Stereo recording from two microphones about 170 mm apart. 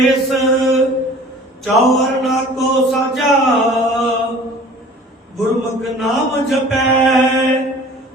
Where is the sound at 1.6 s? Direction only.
Centre (ahead or behind).